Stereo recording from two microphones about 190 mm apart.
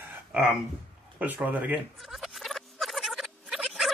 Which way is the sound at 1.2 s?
10° right (ahead or behind).